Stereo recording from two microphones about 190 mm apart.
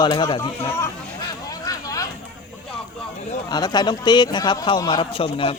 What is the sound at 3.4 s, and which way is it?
Speech, 20° left (ahead or behind).